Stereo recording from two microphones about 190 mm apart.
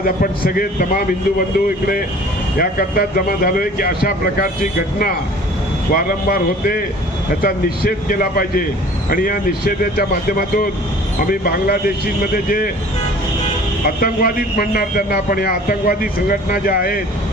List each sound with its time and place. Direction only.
0.0 s a man's voice: 50° left (ahead or behind)
13.8 s a man's voice: 50° left (ahead or behind)